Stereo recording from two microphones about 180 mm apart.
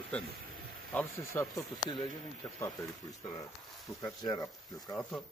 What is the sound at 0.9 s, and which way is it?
Speech, 10° left (ahead or behind).